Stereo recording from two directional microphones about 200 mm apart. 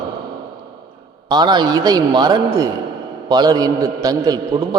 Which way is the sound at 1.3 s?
20° right (ahead or behind).